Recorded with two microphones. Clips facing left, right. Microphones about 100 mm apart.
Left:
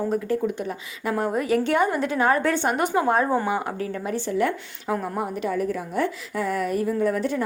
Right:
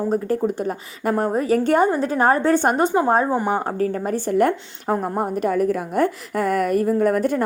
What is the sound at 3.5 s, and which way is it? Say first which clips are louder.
A woman's voice: right 5 dB; 40° right (ahead or behind).